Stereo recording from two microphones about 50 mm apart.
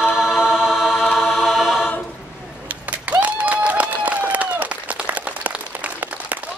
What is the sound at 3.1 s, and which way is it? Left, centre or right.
Applause, right.